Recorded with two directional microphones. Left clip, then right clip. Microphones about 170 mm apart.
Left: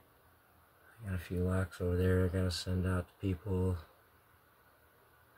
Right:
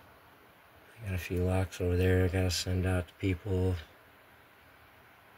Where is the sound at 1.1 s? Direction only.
15° right (ahead or behind).